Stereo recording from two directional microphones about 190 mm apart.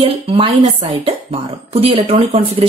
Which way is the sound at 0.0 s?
30° right (ahead or behind).